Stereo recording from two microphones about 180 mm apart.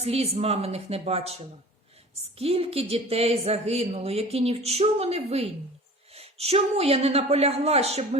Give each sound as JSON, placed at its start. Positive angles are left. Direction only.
{"t": 0.0, "sound": "speech", "side_deg": -35}
{"t": 2.4, "sound": "speech", "side_deg": -35}